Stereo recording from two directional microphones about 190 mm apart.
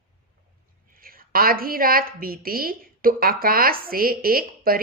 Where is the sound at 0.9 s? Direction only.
50° right (ahead or behind).